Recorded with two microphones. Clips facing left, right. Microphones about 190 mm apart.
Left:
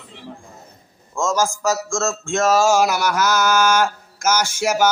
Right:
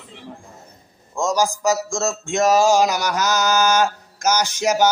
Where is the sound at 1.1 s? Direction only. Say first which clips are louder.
Even; 15° right (ahead or behind).